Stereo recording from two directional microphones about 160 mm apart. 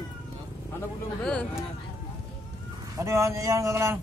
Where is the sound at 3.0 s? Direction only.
20° right (ahead or behind).